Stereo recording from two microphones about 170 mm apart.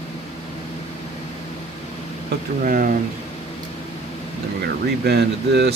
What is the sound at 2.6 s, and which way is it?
Speech, 55° right (ahead or behind).